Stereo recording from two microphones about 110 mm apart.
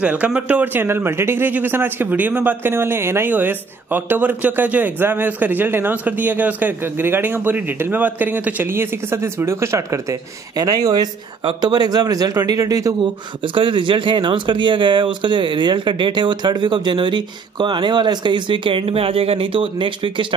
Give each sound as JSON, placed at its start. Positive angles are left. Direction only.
{"t": 0.0, "sound": "a man's voice", "side_deg": -15}
{"t": 13.0, "sound": "speech", "side_deg": -50}